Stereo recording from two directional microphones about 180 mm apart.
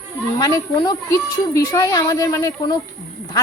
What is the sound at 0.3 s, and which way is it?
A woman's voice, 20° left (ahead or behind).